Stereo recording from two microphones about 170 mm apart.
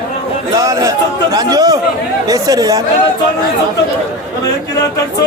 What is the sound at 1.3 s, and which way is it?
Chatter, 20° right (ahead or behind).